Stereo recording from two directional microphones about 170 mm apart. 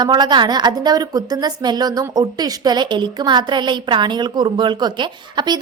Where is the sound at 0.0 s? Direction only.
25° right (ahead or behind).